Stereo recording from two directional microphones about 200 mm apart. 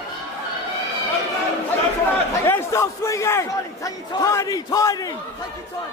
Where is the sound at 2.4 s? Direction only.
15° left (ahead or behind).